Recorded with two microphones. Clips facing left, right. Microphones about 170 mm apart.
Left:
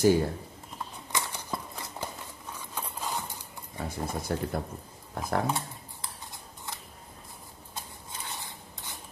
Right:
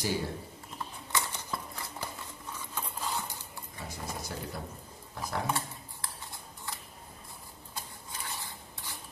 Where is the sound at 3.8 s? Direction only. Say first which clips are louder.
Left 7 dB; 55° left (ahead or behind).